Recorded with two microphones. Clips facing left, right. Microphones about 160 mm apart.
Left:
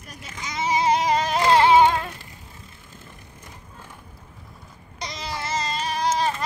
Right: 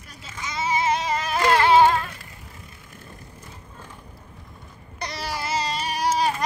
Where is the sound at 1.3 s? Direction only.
20° left (ahead or behind).